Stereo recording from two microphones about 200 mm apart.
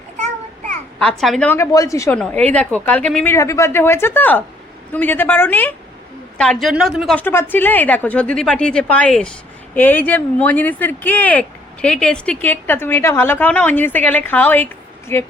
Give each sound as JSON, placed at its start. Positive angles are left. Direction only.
{"t": 1.2, "sound": "a woman's voice", "side_deg": 5}